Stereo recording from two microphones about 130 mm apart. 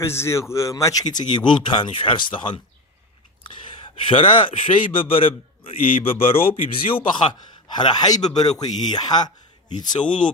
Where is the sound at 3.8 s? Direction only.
40° left (ahead or behind).